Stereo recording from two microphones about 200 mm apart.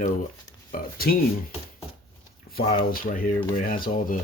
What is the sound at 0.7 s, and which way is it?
Speech, 45° left (ahead or behind).